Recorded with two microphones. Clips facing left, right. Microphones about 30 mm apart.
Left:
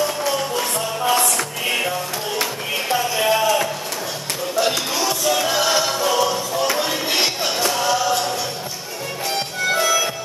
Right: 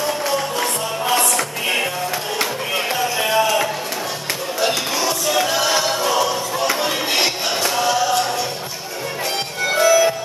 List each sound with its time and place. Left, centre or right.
0.0 s music: centre
9.7 s music: centre